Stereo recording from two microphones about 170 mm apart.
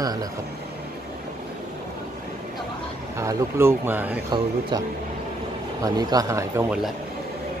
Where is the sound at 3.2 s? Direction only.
15° right (ahead or behind).